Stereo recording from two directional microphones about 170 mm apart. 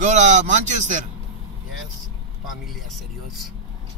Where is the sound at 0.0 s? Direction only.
45° right (ahead or behind).